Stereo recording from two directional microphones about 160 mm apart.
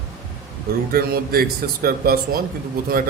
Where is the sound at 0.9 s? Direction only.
70° right (ahead or behind).